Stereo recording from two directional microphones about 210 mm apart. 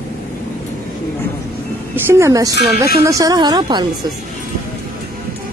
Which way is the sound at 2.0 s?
10° right (ahead or behind).